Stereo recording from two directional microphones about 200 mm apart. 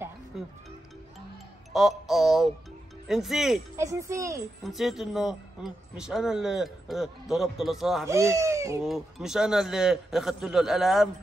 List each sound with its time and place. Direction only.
0.3 s a man's voice: centre (ahead or behind)
1.7 s a man's voice: centre (ahead or behind)
3.7 s speech: 15° right (ahead or behind)
4.6 s a man's voice: centre (ahead or behind)
8.1 s speech: 15° right (ahead or behind)
8.8 s a man's voice: centre (ahead or behind)